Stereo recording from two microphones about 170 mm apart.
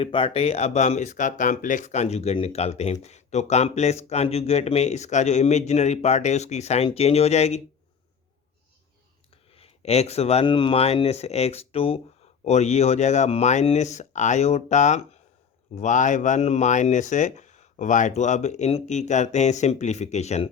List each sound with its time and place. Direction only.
0.0 s speech: 30° left (ahead or behind)
9.5 s speech: 35° left (ahead or behind)